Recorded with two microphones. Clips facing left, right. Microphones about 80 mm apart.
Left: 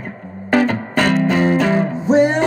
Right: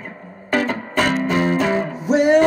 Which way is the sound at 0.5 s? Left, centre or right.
Left.